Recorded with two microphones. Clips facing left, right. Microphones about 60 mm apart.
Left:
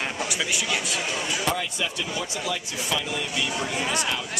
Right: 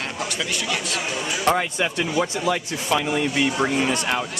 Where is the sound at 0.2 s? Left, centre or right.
Centre.